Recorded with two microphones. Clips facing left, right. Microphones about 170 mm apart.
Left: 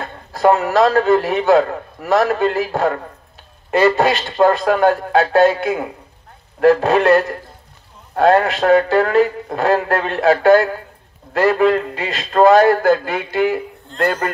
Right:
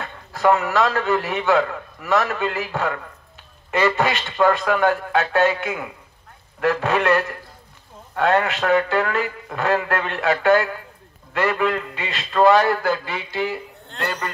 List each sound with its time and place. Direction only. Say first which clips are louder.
0.0 s a man's voice: left 4 dB; 40° left (ahead or behind); by 14.3 s 60° left (ahead or behind)